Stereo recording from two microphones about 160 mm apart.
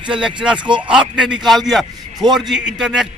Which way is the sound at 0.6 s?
30° right (ahead or behind).